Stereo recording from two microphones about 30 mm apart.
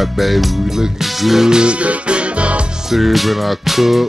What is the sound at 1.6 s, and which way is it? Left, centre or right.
Music, right.